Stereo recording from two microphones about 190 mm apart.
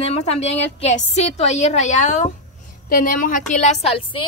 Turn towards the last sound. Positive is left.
turn(degrees=30)  # may be behind; listen again after turning